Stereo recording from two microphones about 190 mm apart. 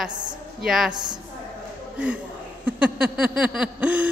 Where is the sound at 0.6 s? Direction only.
Centre (ahead or behind).